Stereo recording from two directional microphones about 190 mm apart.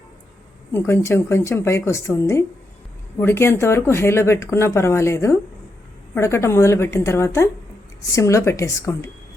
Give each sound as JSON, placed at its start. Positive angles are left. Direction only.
{"t": 0.7, "sound": "speech", "side_deg": 15}